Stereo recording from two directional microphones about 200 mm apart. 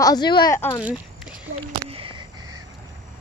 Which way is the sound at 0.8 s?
5° right (ahead or behind).